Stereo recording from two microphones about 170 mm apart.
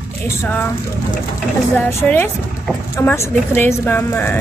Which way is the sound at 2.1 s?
10° left (ahead or behind).